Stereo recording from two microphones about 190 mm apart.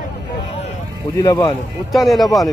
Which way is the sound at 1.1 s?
15° left (ahead or behind).